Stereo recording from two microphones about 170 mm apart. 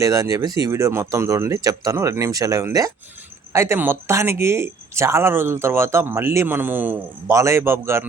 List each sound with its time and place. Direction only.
0.0 s speech: 20° right (ahead or behind)